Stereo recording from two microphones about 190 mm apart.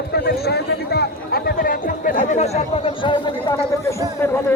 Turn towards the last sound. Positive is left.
turn(degrees=10)  # may be behind; listen again after turning